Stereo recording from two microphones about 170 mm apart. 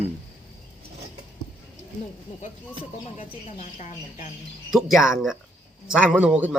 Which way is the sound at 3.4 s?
45° left (ahead or behind).